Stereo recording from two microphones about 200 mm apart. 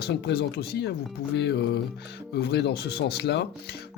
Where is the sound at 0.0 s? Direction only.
55° left (ahead or behind).